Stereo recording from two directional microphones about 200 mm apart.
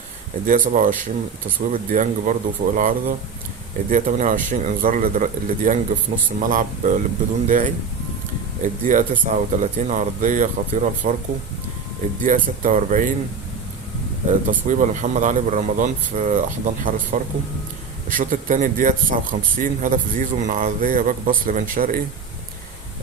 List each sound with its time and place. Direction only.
0.4 s speech: 40° right (ahead or behind)
12.2 s speech: 40° right (ahead or behind)
14.4 s speech: 40° right (ahead or behind)